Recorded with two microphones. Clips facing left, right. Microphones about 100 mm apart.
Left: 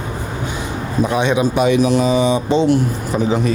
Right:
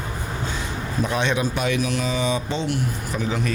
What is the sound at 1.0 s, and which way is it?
A man's voice, 15° left (ahead or behind).